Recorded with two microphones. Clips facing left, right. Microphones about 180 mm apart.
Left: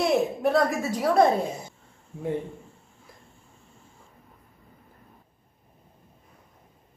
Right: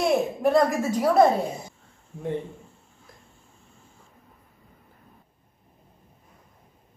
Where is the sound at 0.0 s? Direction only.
Centre (ahead or behind).